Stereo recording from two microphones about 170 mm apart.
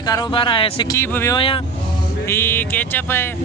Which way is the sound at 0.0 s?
25° left (ahead or behind).